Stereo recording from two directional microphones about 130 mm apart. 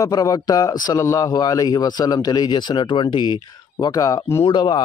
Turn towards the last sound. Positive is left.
turn(degrees=35)  # may be behind; listen again after turning